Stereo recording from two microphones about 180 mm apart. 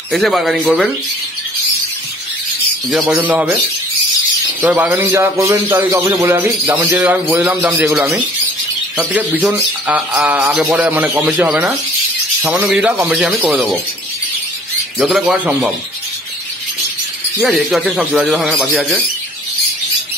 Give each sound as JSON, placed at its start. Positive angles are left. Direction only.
{"t": 0.1, "sound": "speech", "side_deg": 0}
{"t": 2.9, "sound": "a man's voice", "side_deg": 0}
{"t": 4.6, "sound": "a man's voice", "side_deg": -10}
{"t": 15.0, "sound": "speech", "side_deg": 0}
{"t": 17.4, "sound": "speech", "side_deg": 0}